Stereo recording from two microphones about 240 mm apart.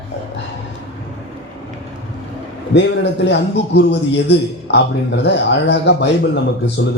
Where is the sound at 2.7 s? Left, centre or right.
Left.